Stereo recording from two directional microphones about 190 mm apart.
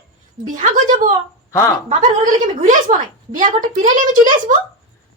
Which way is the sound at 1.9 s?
45° right (ahead or behind).